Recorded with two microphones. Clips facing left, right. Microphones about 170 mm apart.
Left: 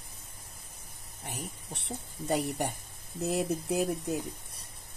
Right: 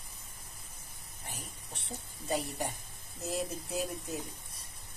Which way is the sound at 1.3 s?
65° left (ahead or behind).